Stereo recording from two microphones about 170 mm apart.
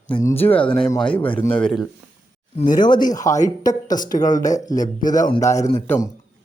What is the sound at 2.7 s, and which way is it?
Speech, 25° left (ahead or behind).